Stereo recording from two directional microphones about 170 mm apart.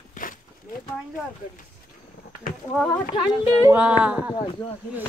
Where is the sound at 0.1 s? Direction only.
50° left (ahead or behind).